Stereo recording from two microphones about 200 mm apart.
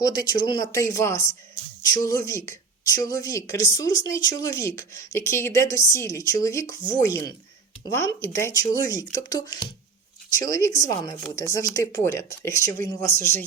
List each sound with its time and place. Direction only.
0.0 s a woman's voice: 20° left (ahead or behind)